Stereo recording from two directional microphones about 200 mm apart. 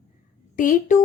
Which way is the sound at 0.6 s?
40° left (ahead or behind).